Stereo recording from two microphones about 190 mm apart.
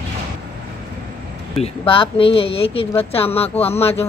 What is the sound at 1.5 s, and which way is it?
Speech, 30° left (ahead or behind).